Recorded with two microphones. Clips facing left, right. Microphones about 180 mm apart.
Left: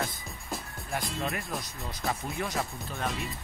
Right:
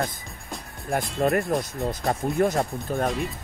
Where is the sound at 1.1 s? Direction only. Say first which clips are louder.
Right 11 dB; 45° right (ahead or behind).